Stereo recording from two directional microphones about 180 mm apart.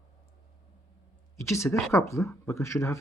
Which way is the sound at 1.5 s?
15° left (ahead or behind).